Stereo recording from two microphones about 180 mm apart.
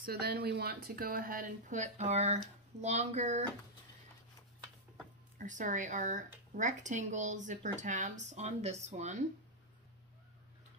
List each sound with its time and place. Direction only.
0.0 s speech: 60° right (ahead or behind); by 3.4 s 40° right (ahead or behind)
5.4 s speech: 45° right (ahead or behind)